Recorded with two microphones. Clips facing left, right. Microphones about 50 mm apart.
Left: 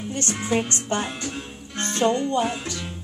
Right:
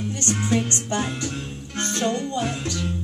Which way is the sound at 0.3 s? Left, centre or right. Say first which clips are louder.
Right 2 dB; left.